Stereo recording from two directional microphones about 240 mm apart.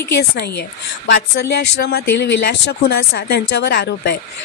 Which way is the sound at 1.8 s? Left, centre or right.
Left.